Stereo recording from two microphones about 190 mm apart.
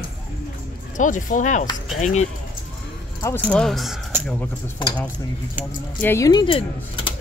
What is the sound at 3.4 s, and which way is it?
Speech, 5° left (ahead or behind).